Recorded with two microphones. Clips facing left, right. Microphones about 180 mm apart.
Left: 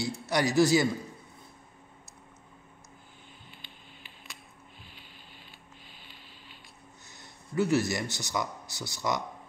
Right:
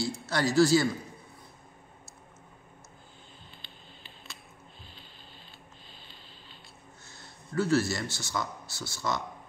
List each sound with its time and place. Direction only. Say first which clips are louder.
0.3 s speech: even; 15° left (ahead or behind)
3.6 s music: even; 10° left (ahead or behind)
5.9 s a sound: even; 10° left (ahead or behind)
7.1 s speech: right 1 dB; 20° left (ahead or behind)